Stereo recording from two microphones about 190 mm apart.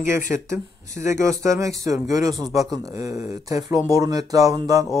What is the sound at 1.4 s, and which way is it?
Speech, 15° right (ahead or behind).